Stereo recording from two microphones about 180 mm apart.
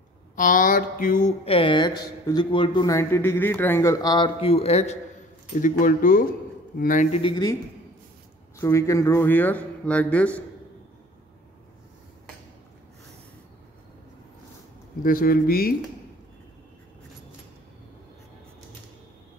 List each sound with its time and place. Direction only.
0.4 s speech: 50° left (ahead or behind)
5.6 s speech: 50° left (ahead or behind)
7.2 s speech: 30° left (ahead or behind)
8.5 s a man's voice: 15° left (ahead or behind)
15.0 s speech: 55° left (ahead or behind)